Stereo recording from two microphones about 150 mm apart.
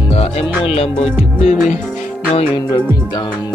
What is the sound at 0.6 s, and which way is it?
Speech, 40° left (ahead or behind).